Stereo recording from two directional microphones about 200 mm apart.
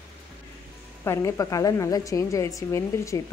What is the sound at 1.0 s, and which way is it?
A woman's voice, 15° left (ahead or behind).